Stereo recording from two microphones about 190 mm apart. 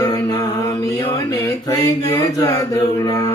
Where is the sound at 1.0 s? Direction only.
20° left (ahead or behind).